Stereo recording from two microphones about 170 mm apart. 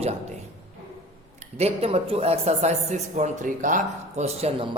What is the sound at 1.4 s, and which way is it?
A man's voice, 40° right (ahead or behind).